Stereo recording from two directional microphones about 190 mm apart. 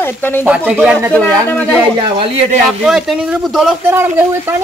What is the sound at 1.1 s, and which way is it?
Speech, 5° left (ahead or behind).